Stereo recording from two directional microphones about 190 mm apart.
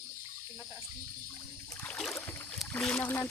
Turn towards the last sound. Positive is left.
turn(degrees=10)  # may be behind; listen again after turning